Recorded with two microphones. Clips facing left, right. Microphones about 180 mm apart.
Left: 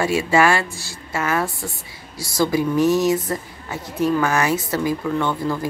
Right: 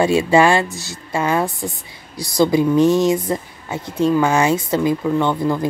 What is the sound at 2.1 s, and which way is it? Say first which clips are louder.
Speech: right 4 dB; 5° left (ahead or behind).